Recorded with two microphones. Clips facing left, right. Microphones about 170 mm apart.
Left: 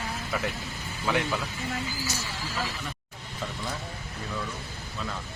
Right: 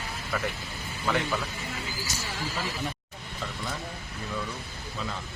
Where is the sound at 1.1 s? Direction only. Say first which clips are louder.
Left 1 dB; 5° left (ahead or behind).